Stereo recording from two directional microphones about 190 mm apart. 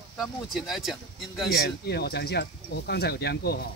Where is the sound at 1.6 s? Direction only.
60° left (ahead or behind).